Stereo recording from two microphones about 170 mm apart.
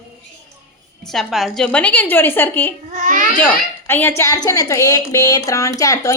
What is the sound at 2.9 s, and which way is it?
Speech, 50° right (ahead or behind).